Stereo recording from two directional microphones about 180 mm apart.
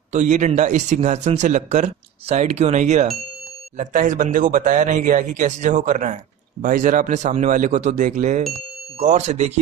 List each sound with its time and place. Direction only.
0.1 s speech: 40° right (ahead or behind)